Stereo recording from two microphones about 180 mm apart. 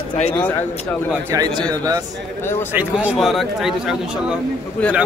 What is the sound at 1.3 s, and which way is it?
Speech, 15° right (ahead or behind).